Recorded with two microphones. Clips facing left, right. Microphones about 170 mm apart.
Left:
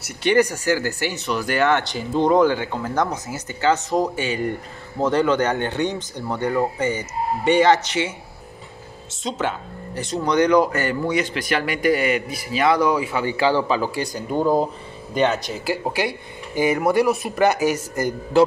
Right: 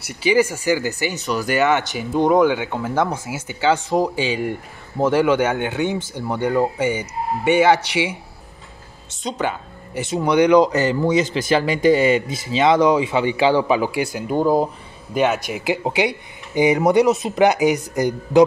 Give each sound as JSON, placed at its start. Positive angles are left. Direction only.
{"t": 0.2, "sound": "speech", "side_deg": -5}
{"t": 9.1, "sound": "speech", "side_deg": 0}